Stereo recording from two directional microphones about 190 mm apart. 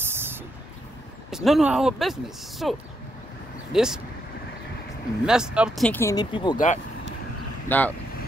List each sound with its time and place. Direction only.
0.0 s vehicle: 10° right (ahead or behind)
1.3 s speech: centre (ahead or behind)
3.7 s speech: 5° right (ahead or behind)
5.2 s speech: 5° right (ahead or behind)
5.9 s speech: 15° left (ahead or behind)
7.6 s speech: 10° left (ahead or behind)